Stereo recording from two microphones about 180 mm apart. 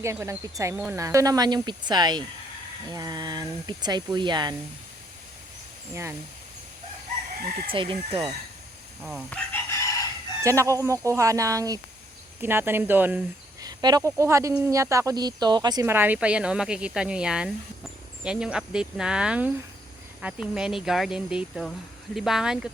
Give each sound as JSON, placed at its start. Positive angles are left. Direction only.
{"t": 0.0, "sound": "speech", "side_deg": -15}
{"t": 5.9, "sound": "speech", "side_deg": -15}
{"t": 7.7, "sound": "speech", "side_deg": -30}
{"t": 9.0, "sound": "speech", "side_deg": -5}
{"t": 9.3, "sound": "chicken", "side_deg": 10}
{"t": 10.4, "sound": "speech", "side_deg": -15}
{"t": 13.6, "sound": "speech", "side_deg": -20}